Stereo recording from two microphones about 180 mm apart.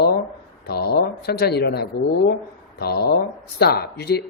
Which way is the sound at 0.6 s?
60° left (ahead or behind).